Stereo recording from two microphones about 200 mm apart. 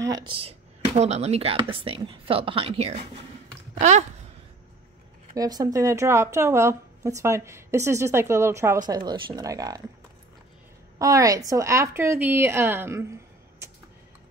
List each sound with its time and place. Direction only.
0.0 s speech: 20° right (ahead or behind)
5.3 s speech: 20° right (ahead or behind)
11.0 s speech: 15° right (ahead or behind)